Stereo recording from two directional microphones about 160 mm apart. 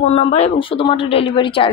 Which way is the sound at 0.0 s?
40° left (ahead or behind).